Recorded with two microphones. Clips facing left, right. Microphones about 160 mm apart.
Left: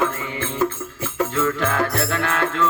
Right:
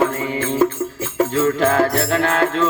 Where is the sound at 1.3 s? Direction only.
35° right (ahead or behind).